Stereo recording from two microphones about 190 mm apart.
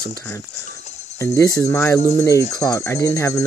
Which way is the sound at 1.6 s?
15° left (ahead or behind).